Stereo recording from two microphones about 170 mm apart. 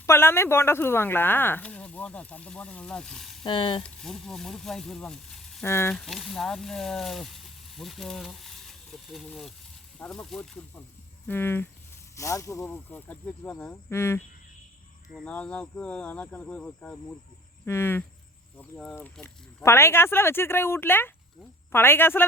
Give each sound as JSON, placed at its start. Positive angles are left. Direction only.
{"t": 0.0, "sound": "speech", "side_deg": 15}
{"t": 3.4, "sound": "speech", "side_deg": 30}
{"t": 3.8, "sound": "speech", "side_deg": 0}
{"t": 5.6, "sound": "speech", "side_deg": 15}
{"t": 6.0, "sound": "speech", "side_deg": 0}
{"t": 18.5, "sound": "speech", "side_deg": 5}